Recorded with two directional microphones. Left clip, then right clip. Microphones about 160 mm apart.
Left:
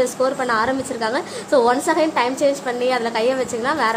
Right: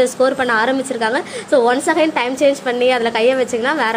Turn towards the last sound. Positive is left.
turn(degrees=-15)  # may be behind; listen again after turning